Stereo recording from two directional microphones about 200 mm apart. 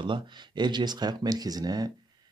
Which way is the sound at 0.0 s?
25° right (ahead or behind).